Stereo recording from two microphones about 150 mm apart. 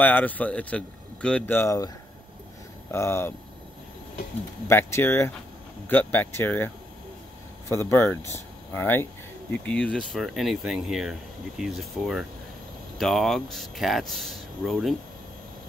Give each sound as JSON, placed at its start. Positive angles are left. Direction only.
{"t": 0.0, "sound": "a man's voice", "side_deg": 10}
{"t": 2.9, "sound": "a man's voice", "side_deg": 20}
{"t": 4.6, "sound": "a man's voice", "side_deg": 15}
{"t": 7.8, "sound": "speech", "side_deg": 15}